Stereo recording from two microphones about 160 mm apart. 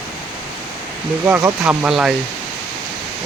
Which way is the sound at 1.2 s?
15° right (ahead or behind).